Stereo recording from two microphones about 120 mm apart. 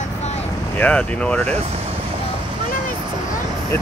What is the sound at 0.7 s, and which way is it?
Speech, 15° left (ahead or behind).